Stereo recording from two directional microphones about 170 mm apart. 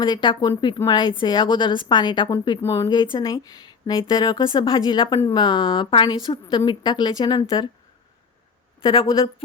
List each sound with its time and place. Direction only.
0.0 s speech: 25° left (ahead or behind)
2.6 s speech: 15° left (ahead or behind)
2.9 s speech: 25° left (ahead or behind)
8.8 s speech: 30° left (ahead or behind)